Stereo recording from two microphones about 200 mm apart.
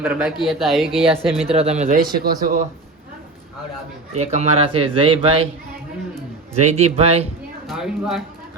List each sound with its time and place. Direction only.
0.0 s speech: 5° right (ahead or behind)
0.9 s speech: 25° right (ahead or behind); by 2.6 s 40° right (ahead or behind)
4.2 s speech: 35° right (ahead or behind)
6.5 s speech: 35° right (ahead or behind)
7.7 s speech: centre (ahead or behind)